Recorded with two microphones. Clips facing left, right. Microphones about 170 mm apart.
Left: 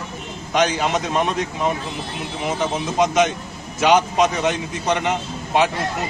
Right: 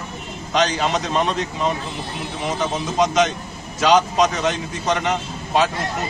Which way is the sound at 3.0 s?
10° left (ahead or behind).